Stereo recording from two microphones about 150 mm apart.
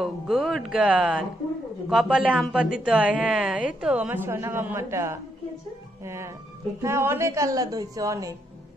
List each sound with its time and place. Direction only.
0.0 s a woman's voice: centre (ahead or behind); by 8.4 s 20° right (ahead or behind)